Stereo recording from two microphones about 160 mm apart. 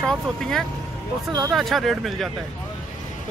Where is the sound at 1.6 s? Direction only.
Centre (ahead or behind).